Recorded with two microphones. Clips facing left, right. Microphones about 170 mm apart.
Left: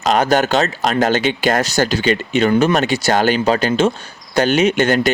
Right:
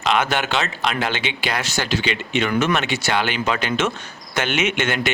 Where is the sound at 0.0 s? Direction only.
40° left (ahead or behind).